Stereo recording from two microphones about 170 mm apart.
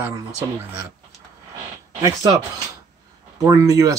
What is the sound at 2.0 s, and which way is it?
Speech, 20° right (ahead or behind).